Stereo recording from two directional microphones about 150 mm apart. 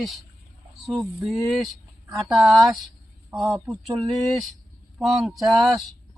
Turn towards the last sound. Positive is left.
turn(degrees=0)  # may be behind; listen again after turning